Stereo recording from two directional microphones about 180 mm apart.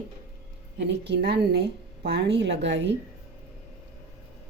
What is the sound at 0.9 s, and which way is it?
A woman's voice, 70° right (ahead or behind).